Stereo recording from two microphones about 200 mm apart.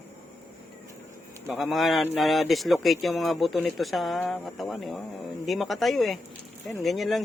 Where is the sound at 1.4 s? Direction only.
Centre (ahead or behind).